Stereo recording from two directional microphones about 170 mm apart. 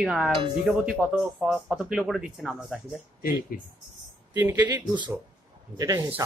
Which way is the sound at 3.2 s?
60° left (ahead or behind).